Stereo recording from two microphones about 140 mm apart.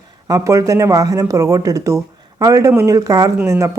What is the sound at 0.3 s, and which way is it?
Speech, 20° right (ahead or behind).